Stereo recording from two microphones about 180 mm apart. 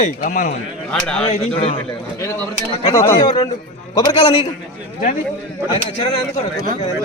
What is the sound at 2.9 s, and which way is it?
A man's voice, 15° left (ahead or behind).